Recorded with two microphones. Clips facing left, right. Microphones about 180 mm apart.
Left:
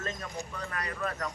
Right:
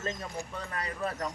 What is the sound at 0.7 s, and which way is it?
Speech, 30° right (ahead or behind).